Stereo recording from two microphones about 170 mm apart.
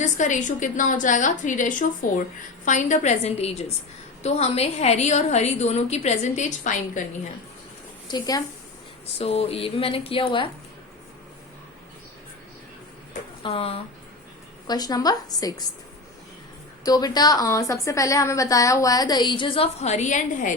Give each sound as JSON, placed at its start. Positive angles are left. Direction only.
{"t": 0.0, "sound": "a woman's voice", "side_deg": 45}
{"t": 8.0, "sound": "a woman's voice", "side_deg": 25}
{"t": 9.1, "sound": "a woman's voice", "side_deg": 35}
{"t": 13.4, "sound": "a woman's voice", "side_deg": 35}
{"t": 14.7, "sound": "a woman's voice", "side_deg": 25}
{"t": 16.8, "sound": "a woman's voice", "side_deg": 20}